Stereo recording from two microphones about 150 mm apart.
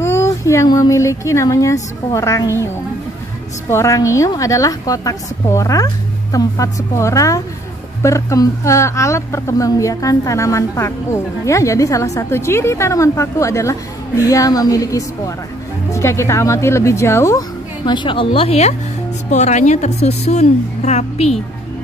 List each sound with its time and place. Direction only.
0.0 s a woman's voice: 15° left (ahead or behind)
3.7 s a woman's voice: 20° left (ahead or behind); by 21.4 s 45° left (ahead or behind)